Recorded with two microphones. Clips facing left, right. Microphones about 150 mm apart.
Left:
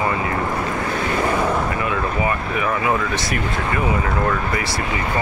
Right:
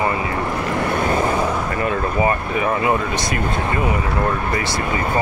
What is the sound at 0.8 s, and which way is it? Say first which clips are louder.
Vehicle: right 3 dB; 55° right (ahead or behind).